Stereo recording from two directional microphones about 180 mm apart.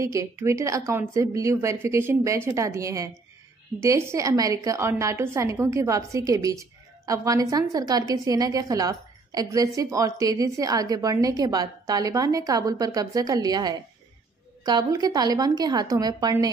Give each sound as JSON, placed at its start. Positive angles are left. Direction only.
{"t": 0.0, "sound": "a woman's voice", "side_deg": -15}